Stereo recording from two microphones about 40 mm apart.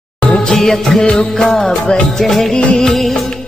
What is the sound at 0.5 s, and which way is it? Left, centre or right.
Music, centre.